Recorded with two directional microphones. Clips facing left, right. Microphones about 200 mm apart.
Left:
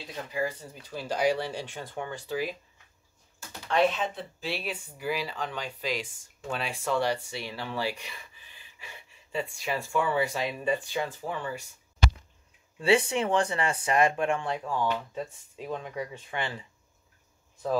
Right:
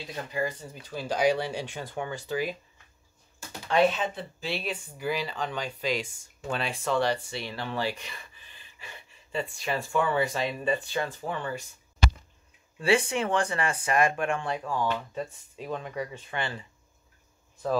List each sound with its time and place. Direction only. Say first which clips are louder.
0.0 s speech: right 1 dB; centre (ahead or behind)
3.6 s speech: right 2 dB; 5° right (ahead or behind)
12.7 s speech: left 1 dB; 25° left (ahead or behind)